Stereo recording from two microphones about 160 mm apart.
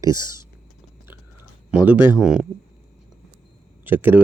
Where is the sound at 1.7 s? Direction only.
10° right (ahead or behind).